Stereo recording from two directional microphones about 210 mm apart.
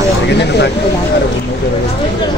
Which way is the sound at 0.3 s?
50° left (ahead or behind).